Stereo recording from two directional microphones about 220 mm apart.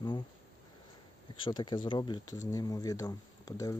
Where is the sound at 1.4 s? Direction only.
20° left (ahead or behind).